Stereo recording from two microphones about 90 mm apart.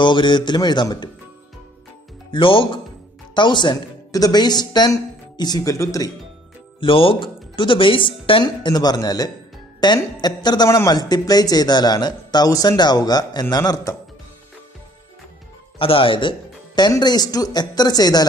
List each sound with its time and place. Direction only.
0.0 s a man's voice: 65° left (ahead or behind)
2.3 s speech: 75° left (ahead or behind)
3.3 s a man's voice: 60° left (ahead or behind)
4.1 s speech: 45° left (ahead or behind)
6.8 s speech: 85° left; by 8.5 s 70° left (ahead or behind)
8.5 s speech: 50° left (ahead or behind)
15.8 s speech: 80° left; by 16.9 s 60° left (ahead or behind)
16.9 s speech: 45° left (ahead or behind)